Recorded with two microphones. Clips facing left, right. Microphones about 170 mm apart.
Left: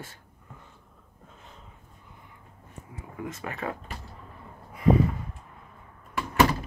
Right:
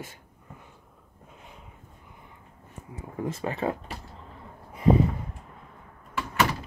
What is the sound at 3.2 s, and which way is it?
Speech, 30° right (ahead or behind).